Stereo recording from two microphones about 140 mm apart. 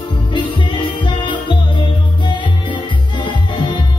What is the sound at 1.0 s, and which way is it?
Music, 35° left (ahead or behind).